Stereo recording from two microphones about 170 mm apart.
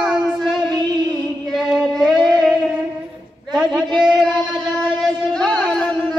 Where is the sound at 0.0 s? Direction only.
Centre (ahead or behind).